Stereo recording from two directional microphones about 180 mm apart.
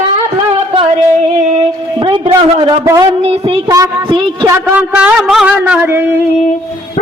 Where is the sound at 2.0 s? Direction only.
25° right (ahead or behind).